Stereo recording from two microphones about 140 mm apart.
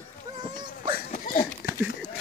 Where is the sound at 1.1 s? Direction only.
75° left (ahead or behind).